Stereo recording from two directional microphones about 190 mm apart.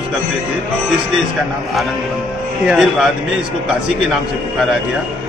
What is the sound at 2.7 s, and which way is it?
Speech, 5° right (ahead or behind).